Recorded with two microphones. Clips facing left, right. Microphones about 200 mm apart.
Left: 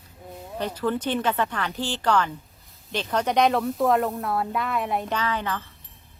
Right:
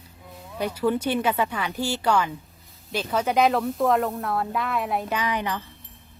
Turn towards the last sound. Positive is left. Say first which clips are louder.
# right 1 dB
turn(degrees=-15)  # may be behind; listen again after turning